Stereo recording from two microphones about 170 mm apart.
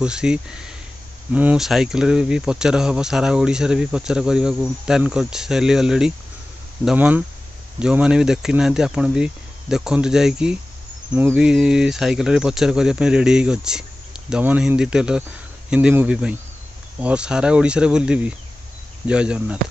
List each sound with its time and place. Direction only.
0.0 s speech: 5° right (ahead or behind)